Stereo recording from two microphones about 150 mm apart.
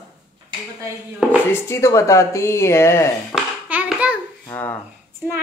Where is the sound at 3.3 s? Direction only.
10° right (ahead or behind).